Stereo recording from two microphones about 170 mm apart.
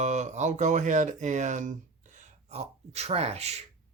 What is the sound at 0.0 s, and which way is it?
Speech, 45° right (ahead or behind).